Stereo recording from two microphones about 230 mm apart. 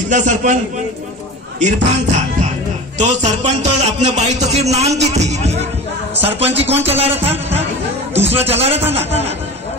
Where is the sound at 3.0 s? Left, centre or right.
Right.